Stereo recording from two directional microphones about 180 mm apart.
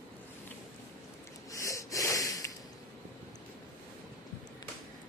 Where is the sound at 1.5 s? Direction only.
15° left (ahead or behind).